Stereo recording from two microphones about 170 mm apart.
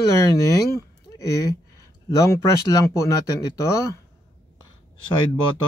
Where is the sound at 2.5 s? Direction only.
20° left (ahead or behind).